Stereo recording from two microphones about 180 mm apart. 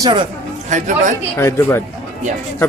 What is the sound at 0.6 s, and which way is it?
Speech, 45° right (ahead or behind).